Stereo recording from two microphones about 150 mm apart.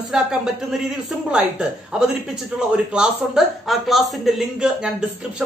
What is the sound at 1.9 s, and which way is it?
Speech, 5° right (ahead or behind).